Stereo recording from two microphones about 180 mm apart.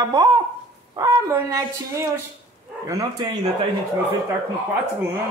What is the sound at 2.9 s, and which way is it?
Speech, 20° right (ahead or behind).